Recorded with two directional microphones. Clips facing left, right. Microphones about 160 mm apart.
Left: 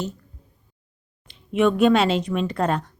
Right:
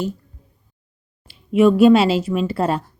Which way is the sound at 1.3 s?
5° right (ahead or behind).